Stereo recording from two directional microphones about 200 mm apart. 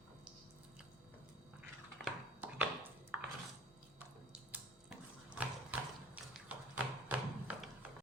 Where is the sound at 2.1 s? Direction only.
10° right (ahead or behind).